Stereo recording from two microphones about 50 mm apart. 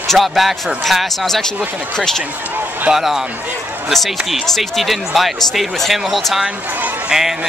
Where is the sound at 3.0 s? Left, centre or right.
Centre.